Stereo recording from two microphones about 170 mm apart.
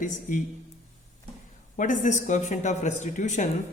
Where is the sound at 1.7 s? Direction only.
50° left (ahead or behind).